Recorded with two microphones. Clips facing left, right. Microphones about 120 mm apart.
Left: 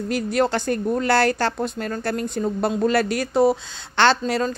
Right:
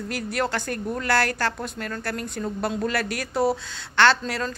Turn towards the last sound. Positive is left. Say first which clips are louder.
# left 2 dB
turn(degrees=20)  # may be behind; listen again after turning